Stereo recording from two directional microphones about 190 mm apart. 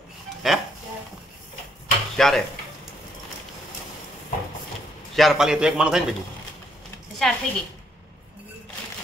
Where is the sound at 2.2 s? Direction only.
Centre (ahead or behind).